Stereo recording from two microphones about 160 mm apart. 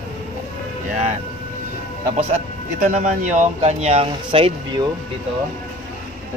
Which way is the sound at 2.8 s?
50° right (ahead or behind).